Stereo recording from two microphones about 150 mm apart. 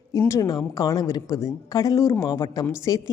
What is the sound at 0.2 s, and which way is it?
A woman's voice, 20° left (ahead or behind).